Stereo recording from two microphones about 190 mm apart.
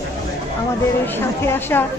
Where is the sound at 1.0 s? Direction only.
10° left (ahead or behind).